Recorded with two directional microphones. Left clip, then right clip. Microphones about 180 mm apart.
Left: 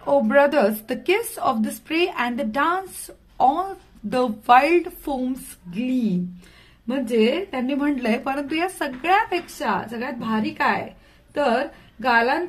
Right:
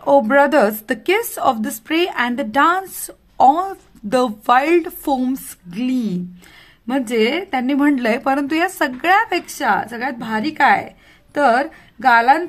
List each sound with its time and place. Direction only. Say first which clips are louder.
0.0 s a woman's voice: right 4 dB; 45° right (ahead or behind)
6.9 s a woman's voice: right 3 dB; 50° right (ahead or behind)
11.3 s a woman's voice: right 6 dB; 65° right (ahead or behind)